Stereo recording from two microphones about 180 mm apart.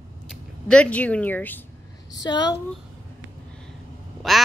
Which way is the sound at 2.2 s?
25° left (ahead or behind).